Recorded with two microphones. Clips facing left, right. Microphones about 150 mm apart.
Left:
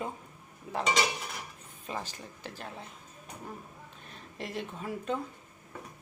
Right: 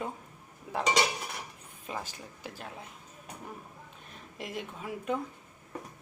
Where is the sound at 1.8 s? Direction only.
10° right (ahead or behind).